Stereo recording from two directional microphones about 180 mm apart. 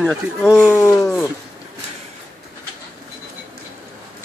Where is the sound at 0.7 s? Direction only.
10° left (ahead or behind).